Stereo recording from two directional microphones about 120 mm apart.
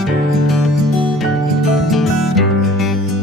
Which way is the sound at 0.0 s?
Centre (ahead or behind).